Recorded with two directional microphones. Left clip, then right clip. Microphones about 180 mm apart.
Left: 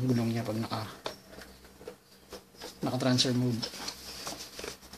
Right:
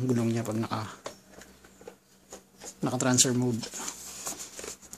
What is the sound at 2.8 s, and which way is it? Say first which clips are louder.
Speech: right 2 dB; 35° right (ahead or behind).